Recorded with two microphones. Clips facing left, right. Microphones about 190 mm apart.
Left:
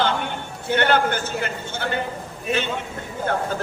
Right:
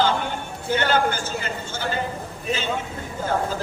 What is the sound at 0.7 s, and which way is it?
A man's voice, 60° left (ahead or behind).